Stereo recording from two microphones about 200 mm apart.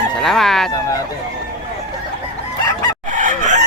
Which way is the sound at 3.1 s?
40° right (ahead or behind).